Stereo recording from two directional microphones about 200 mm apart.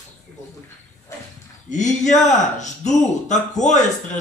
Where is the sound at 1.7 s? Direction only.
35° left (ahead or behind).